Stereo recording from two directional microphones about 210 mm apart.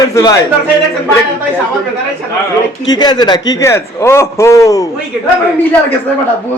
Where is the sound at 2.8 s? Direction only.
20° left (ahead or behind).